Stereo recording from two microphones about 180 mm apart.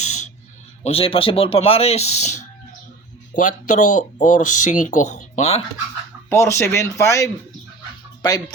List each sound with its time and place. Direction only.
0.0 s a sound: 40° left (ahead or behind)
0.9 s speech: 30° left (ahead or behind)
6.3 s speech: 15° left (ahead or behind)